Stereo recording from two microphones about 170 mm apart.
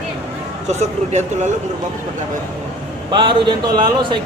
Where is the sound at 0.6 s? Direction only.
45° right (ahead or behind).